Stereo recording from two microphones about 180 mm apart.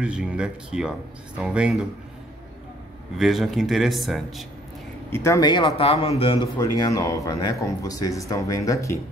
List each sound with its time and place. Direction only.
0.0 s a man's voice: 5° right (ahead or behind)
3.2 s a man's voice: centre (ahead or behind)
5.1 s speech: 15° left (ahead or behind)